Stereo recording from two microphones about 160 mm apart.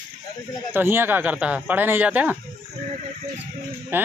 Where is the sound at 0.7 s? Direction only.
15° right (ahead or behind).